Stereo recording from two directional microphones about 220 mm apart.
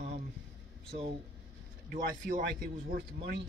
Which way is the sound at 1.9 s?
40° right (ahead or behind).